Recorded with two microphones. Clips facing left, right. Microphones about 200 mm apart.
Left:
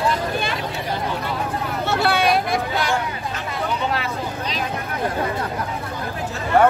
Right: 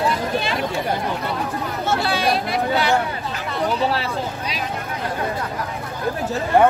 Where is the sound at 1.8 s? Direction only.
60° left (ahead or behind).